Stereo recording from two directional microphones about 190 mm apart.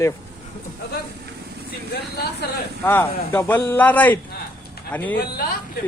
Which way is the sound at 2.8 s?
10° left (ahead or behind).